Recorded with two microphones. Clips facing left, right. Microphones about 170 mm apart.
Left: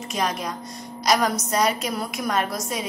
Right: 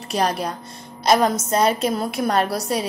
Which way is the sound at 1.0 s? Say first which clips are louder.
Right 4 dB; 30° right (ahead or behind).